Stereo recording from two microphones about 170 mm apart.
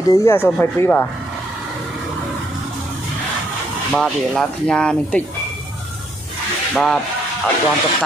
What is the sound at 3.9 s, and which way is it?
Speech, 5° left (ahead or behind).